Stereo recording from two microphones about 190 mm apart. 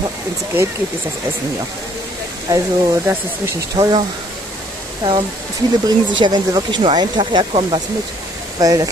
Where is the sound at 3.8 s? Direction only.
20° right (ahead or behind).